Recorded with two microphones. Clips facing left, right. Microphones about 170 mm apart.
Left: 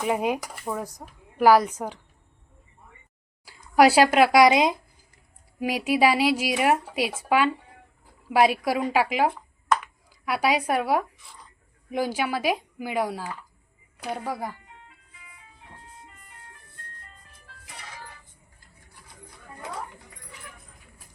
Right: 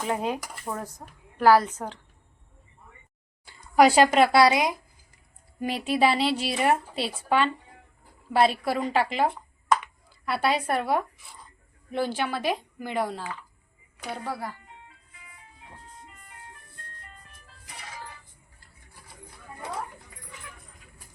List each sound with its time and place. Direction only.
0.1 s a woman's voice: 15° left (ahead or behind)
3.4 s speech: 5° left (ahead or behind); by 4.8 s 20° left (ahead or behind)
5.5 s a woman's voice: 10° left (ahead or behind)